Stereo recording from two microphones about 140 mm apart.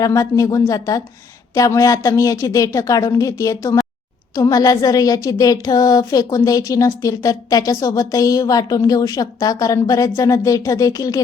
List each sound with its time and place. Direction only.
0.0 s speech: 25° left (ahead or behind)